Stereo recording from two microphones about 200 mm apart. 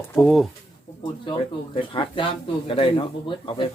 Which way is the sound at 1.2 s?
25° left (ahead or behind).